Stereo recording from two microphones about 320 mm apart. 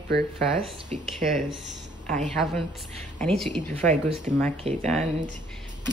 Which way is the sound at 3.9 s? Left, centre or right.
Centre.